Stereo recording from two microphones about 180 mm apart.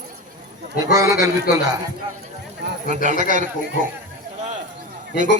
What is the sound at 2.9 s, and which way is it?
Speech, 40° right (ahead or behind).